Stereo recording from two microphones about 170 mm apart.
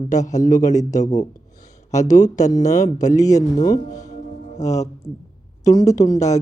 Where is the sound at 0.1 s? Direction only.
45° left (ahead or behind).